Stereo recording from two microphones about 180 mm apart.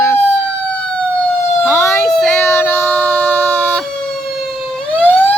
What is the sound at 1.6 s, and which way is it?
Emergency vehicle, 15° left (ahead or behind).